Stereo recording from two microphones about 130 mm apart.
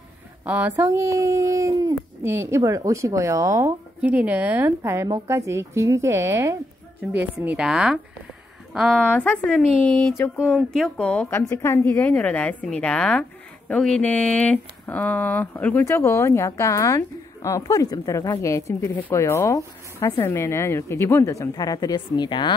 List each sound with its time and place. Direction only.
0.5 s speech: 10° right (ahead or behind)
0.7 s speech: 25° right (ahead or behind)
4.0 s speech: 10° right (ahead or behind)
9.0 s a woman's voice: 10° left (ahead or behind); by 22.5 s 35° left (ahead or behind)